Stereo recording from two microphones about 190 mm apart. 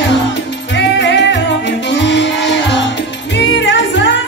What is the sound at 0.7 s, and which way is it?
Music, 70° left (ahead or behind).